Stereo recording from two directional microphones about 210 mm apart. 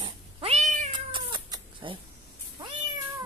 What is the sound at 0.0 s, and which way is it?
Cat, 25° right (ahead or behind).